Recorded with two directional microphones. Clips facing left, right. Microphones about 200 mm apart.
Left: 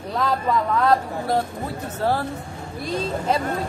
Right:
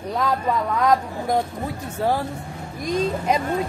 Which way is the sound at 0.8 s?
15° right (ahead or behind).